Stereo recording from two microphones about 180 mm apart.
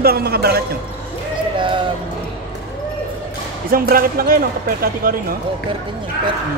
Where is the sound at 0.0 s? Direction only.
60° right (ahead or behind).